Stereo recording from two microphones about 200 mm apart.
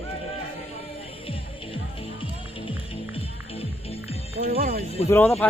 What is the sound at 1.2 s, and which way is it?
Music, 25° left (ahead or behind).